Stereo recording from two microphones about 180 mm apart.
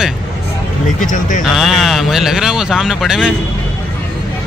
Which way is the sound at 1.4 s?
Centre (ahead or behind).